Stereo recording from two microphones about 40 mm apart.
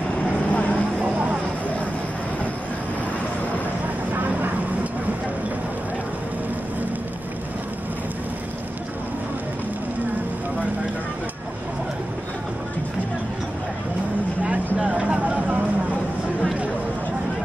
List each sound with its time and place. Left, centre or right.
0.5 s vehicle: left
1.0 s a sound: right
4.1 s vehicle: right
14.8 s vehicle: right